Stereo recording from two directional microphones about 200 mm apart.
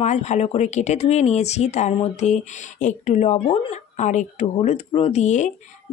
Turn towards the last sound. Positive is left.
turn(degrees=35)  # may be behind; listen again after turning